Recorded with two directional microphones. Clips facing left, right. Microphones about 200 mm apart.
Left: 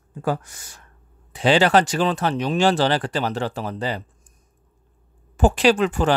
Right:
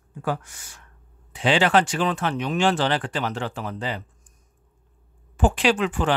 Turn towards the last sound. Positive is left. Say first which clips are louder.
# left 4 dB
turn(degrees=40)  # may be behind; listen again after turning